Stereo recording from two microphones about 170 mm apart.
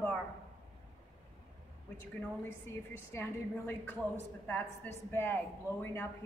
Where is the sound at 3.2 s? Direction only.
10° left (ahead or behind).